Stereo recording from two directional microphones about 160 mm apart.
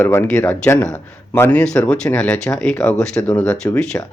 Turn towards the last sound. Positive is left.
turn(degrees=5)  # may be behind; listen again after turning